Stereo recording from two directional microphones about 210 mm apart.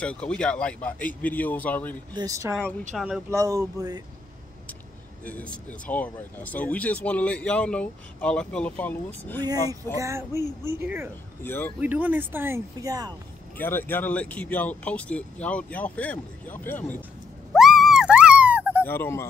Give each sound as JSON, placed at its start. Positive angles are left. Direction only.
{"t": 0.0, "sound": "speech", "side_deg": 5}
{"t": 2.1, "sound": "speech", "side_deg": -15}
{"t": 2.9, "sound": "speech", "side_deg": 0}
{"t": 3.3, "sound": "speech", "side_deg": -15}
{"t": 5.2, "sound": "speech", "side_deg": 5}
{"t": 9.4, "sound": "speech", "side_deg": -20}
{"t": 11.4, "sound": "speech", "side_deg": 10}
{"t": 11.8, "sound": "speech", "side_deg": -5}
{"t": 13.6, "sound": "speech", "side_deg": 10}
{"t": 17.5, "sound": "a sound", "side_deg": 0}
{"t": 18.9, "sound": "speech", "side_deg": 10}